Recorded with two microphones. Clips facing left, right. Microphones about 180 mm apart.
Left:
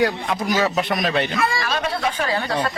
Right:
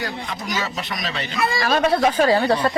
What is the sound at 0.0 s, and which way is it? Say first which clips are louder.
A man's voice: left 8 dB; 60° left (ahead or behind).